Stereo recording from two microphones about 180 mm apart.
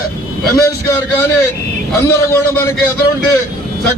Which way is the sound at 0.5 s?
15° left (ahead or behind).